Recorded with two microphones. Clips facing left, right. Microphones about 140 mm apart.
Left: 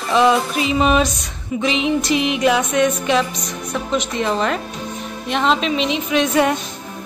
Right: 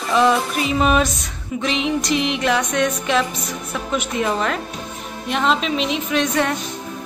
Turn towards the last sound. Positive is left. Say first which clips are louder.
# left 3 dB
turn(degrees=5)  # may be behind; listen again after turning